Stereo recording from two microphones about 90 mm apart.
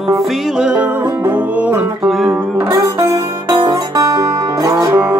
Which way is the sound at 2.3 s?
35° right (ahead or behind).